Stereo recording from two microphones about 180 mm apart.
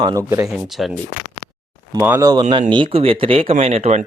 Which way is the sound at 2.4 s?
25° right (ahead or behind).